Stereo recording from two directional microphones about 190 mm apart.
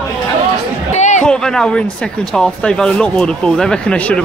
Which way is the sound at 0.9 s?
40° left (ahead or behind).